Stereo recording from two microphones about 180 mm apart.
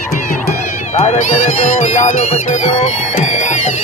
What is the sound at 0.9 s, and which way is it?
Speech, 40° left (ahead or behind).